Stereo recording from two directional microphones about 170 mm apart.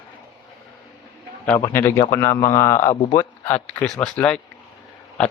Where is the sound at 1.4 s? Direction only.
15° left (ahead or behind).